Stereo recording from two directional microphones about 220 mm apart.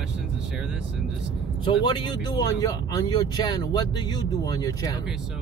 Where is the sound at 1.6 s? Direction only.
20° left (ahead or behind).